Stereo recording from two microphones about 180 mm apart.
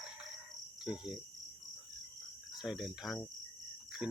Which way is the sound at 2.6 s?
Centre (ahead or behind).